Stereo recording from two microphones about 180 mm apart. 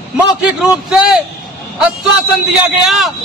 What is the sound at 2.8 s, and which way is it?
Speech, centre (ahead or behind).